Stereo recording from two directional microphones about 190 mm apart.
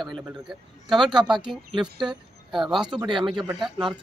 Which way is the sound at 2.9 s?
25° right (ahead or behind).